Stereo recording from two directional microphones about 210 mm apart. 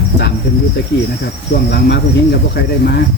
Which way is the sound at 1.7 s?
50° left (ahead or behind).